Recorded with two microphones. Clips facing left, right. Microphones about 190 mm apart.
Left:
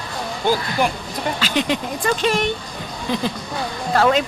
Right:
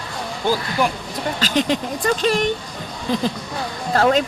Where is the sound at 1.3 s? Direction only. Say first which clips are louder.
Right 3 dB; 40° right (ahead or behind).